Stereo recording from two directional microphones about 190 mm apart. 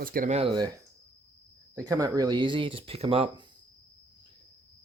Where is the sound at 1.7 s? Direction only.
20° right (ahead or behind).